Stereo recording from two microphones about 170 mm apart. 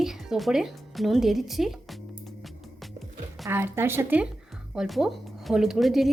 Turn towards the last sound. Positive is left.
turn(degrees=0)  # may be behind; listen again after turning